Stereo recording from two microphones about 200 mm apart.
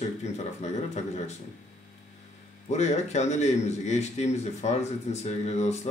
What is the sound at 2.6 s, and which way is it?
Speech, 35° left (ahead or behind).